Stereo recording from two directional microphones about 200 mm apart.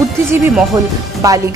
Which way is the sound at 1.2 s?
15° right (ahead or behind).